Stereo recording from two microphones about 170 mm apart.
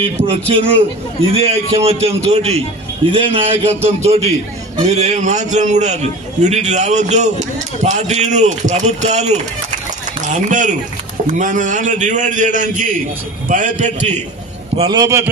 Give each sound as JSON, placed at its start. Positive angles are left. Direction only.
{"t": 0.0, "sound": "a man's voice", "side_deg": -35}
{"t": 14.8, "sound": "a man's voice", "side_deg": -25}